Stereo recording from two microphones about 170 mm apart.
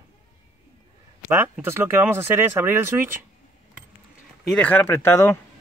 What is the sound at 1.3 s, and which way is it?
Speech, 15° right (ahead or behind).